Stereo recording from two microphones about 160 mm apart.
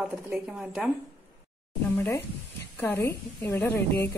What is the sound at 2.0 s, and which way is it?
Speech, 15° left (ahead or behind).